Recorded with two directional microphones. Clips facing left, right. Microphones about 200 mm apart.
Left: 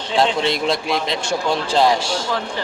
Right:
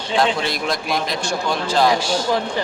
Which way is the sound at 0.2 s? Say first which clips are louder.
Left 2 dB; 25° left (ahead or behind).